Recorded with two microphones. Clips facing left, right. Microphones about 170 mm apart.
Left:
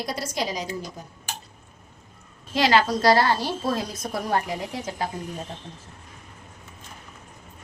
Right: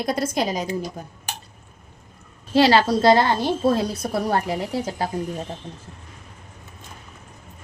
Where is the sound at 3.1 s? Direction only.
20° right (ahead or behind).